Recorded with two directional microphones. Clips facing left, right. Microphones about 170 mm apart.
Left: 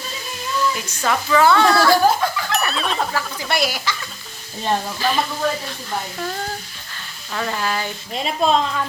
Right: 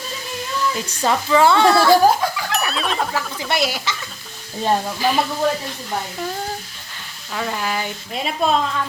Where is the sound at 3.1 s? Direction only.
20° right (ahead or behind).